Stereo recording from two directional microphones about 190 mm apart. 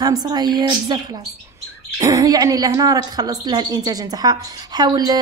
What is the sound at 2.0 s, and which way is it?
A woman's voice, 20° right (ahead or behind).